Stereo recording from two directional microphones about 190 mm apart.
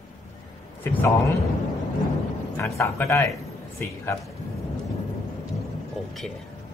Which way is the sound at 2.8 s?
15° left (ahead or behind).